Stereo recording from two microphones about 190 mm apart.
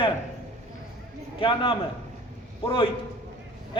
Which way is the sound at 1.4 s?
30° left (ahead or behind).